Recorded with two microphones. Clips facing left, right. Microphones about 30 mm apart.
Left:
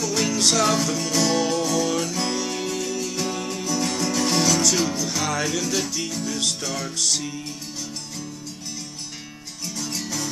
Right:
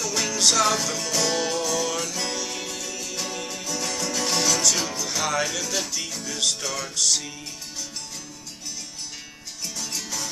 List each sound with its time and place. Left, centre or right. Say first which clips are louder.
0.0 s music: left 1 dB; centre
9.8 s music: left 3 dB; centre